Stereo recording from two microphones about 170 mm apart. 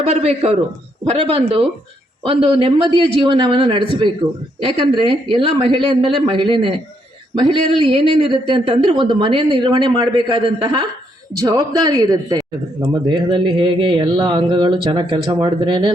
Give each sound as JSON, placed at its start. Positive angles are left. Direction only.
{"t": 0.0, "sound": "a man's voice", "side_deg": -40}